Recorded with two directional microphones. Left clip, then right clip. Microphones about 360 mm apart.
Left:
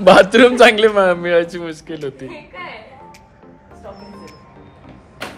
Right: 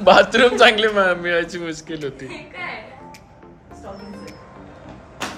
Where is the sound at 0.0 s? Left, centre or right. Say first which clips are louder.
Left 4 dB; centre.